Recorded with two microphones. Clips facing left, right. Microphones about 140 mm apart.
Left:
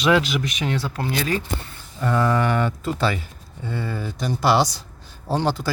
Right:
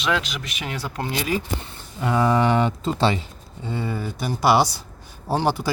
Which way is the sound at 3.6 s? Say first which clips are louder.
Right 1 dB; 15° right (ahead or behind).